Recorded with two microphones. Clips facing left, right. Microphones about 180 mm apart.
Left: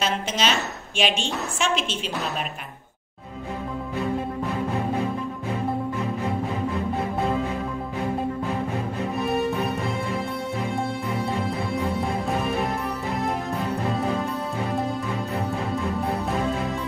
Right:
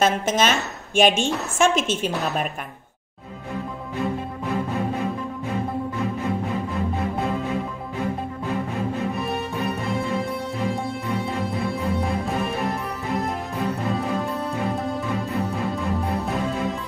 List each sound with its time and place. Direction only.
0.0 s a woman's voice: 50° right (ahead or behind)